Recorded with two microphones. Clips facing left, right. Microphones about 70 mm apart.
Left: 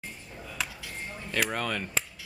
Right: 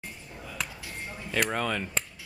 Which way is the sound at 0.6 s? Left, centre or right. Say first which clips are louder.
Left 1 dB; centre.